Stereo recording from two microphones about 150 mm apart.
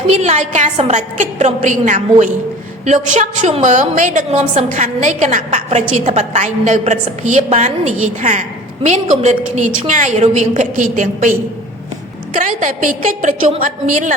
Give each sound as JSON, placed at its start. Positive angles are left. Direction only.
{"t": 0.1, "sound": "a woman's voice", "side_deg": -50}
{"t": 4.3, "sound": "a woman's voice", "side_deg": -50}
{"t": 12.4, "sound": "a woman's voice", "side_deg": -60}